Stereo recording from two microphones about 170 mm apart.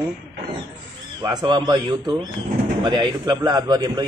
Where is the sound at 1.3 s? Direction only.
25° right (ahead or behind).